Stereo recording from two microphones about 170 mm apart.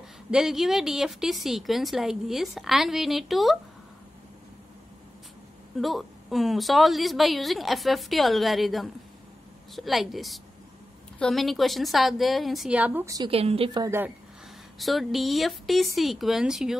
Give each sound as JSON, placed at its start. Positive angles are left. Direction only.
{"t": 0.3, "sound": "a woman's voice", "side_deg": -5}
{"t": 5.8, "sound": "a woman's voice", "side_deg": 0}
{"t": 13.3, "sound": "a woman's voice", "side_deg": -35}
{"t": 13.7, "sound": "speech", "side_deg": -15}
{"t": 14.8, "sound": "a woman's voice", "side_deg": 0}